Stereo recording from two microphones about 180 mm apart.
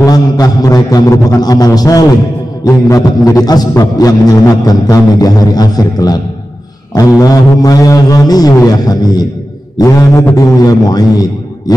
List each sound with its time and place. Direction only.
0.0 s a man's voice: 20° left (ahead or behind)